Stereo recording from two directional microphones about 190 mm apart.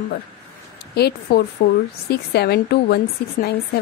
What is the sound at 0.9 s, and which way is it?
A woman's voice, 60° left (ahead or behind).